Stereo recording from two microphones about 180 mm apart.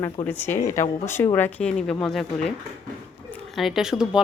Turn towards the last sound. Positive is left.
turn(degrees=-5)  # may be behind; listen again after turning